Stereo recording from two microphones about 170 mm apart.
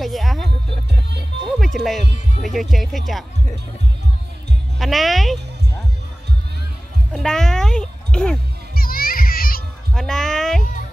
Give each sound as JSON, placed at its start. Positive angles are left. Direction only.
{"t": 0.0, "sound": "music", "side_deg": 0}
{"t": 1.6, "sound": "music", "side_deg": 0}
{"t": 2.4, "sound": "speech", "side_deg": 0}
{"t": 4.7, "sound": "speech", "side_deg": 0}
{"t": 7.1, "sound": "speech", "side_deg": 5}
{"t": 8.7, "sound": "children playing", "side_deg": 60}
{"t": 9.9, "sound": "a sound", "side_deg": 5}